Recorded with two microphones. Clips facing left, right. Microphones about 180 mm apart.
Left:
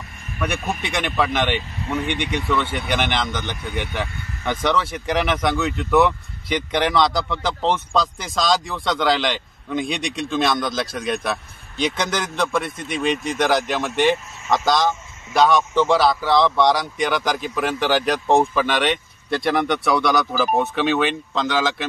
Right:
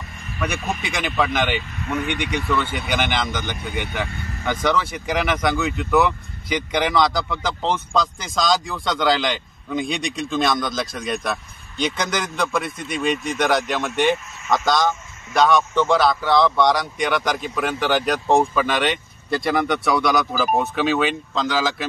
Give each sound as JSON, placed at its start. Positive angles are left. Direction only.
{"t": 0.4, "sound": "speech", "side_deg": 0}
{"t": 1.8, "sound": "speech", "side_deg": 25}
{"t": 2.0, "sound": "speech", "side_deg": 0}